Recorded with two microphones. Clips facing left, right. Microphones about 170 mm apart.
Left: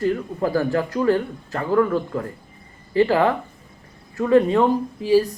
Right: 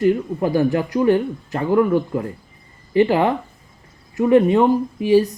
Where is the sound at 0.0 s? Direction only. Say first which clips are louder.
Right 4 dB; 20° right (ahead or behind).